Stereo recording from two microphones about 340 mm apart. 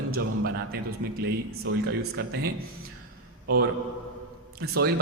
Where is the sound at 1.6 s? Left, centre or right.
Right.